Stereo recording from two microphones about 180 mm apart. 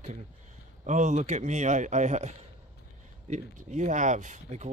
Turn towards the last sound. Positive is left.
turn(degrees=-40)  # may be behind; listen again after turning